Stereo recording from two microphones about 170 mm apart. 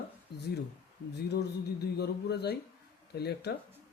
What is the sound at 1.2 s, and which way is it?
A man's voice, 70° left (ahead or behind).